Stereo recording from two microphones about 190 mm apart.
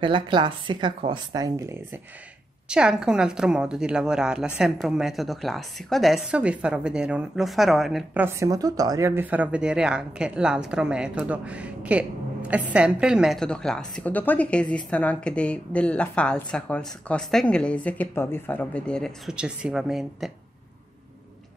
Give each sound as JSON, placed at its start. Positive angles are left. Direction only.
{"t": 0.0, "sound": "speech", "side_deg": -25}
{"t": 2.7, "sound": "a woman's voice", "side_deg": -5}